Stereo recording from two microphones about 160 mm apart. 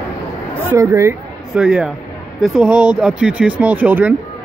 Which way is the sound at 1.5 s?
5° right (ahead or behind).